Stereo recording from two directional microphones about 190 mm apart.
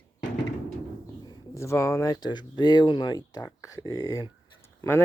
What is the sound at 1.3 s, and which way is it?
Speech, 15° left (ahead or behind).